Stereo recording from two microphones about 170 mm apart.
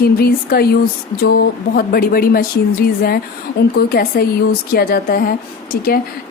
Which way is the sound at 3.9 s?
60° left (ahead or behind).